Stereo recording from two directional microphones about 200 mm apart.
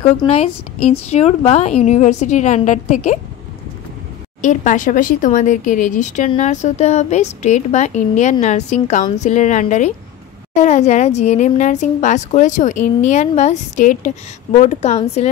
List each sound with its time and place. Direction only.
0.3 s speech: 30° left (ahead or behind)
4.4 s speech: 40° left (ahead or behind)